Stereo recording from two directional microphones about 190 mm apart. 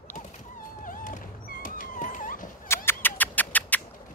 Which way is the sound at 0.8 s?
45° left (ahead or behind).